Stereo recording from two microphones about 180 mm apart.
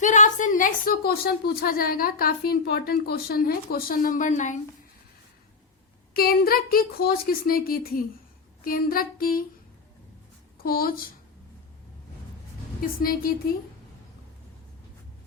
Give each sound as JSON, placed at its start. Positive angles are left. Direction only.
{"t": 0.0, "sound": "a woman's voice", "side_deg": 45}
{"t": 6.1, "sound": "a woman's voice", "side_deg": 55}
{"t": 10.6, "sound": "a woman's voice", "side_deg": 55}
{"t": 12.8, "sound": "a woman's voice", "side_deg": 55}